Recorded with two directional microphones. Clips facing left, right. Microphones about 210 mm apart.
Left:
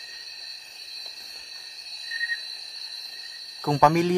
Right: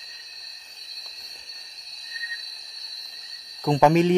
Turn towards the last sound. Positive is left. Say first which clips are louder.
# right 3 dB
turn(degrees=-20)  # may be behind; listen again after turning